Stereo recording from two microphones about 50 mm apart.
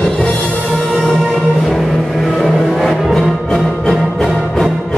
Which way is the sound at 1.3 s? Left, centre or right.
Centre.